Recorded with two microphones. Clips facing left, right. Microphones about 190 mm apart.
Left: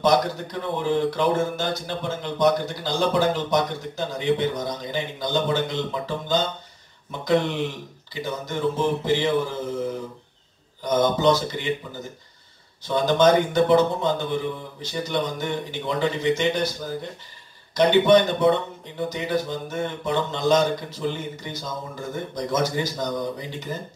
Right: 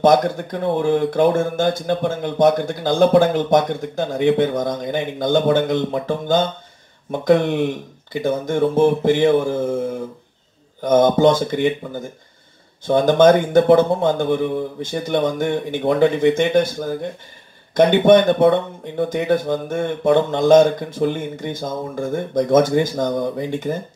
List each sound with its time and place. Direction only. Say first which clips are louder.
0.0 s speech: right 6 dB; 50° right (ahead or behind)